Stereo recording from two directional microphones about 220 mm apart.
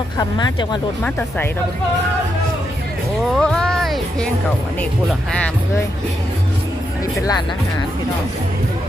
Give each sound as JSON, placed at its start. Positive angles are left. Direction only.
{"t": 0.2, "sound": "speech", "side_deg": 20}
{"t": 3.3, "sound": "music", "side_deg": 5}
{"t": 7.2, "sound": "speech", "side_deg": 15}